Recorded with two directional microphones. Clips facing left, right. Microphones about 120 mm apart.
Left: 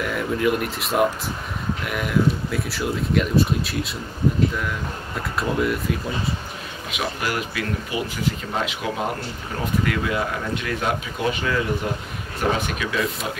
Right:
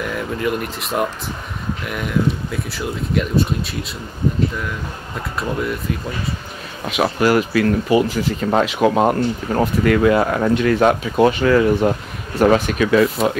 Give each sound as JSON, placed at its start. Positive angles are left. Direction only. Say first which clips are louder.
{"t": 0.0, "sound": "speech", "louder": "even", "side_deg": 0}
{"t": 5.4, "sound": "speech", "louder": "even", "side_deg": 0}
{"t": 7.0, "sound": "speech", "louder": "right 10 dB", "side_deg": -60}
{"t": 9.8, "sound": "speech", "louder": "right 10 dB", "side_deg": -60}
{"t": 12.4, "sound": "speech", "louder": "right 9 dB", "side_deg": -80}
{"t": 12.7, "sound": "speech", "louder": "right 10 dB", "side_deg": -55}